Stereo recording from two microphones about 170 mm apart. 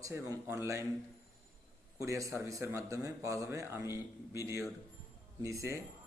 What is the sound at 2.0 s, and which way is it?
Speech, 20° right (ahead or behind).